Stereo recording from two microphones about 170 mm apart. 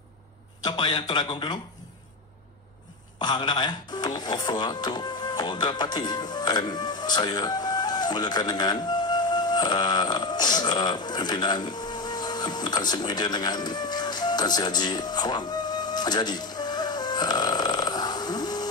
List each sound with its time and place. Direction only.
0.7 s a man's voice: 30° left (ahead or behind)
3.2 s speech: 25° left (ahead or behind)